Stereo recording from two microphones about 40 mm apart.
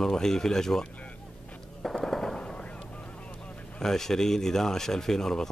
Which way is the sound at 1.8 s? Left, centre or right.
Centre.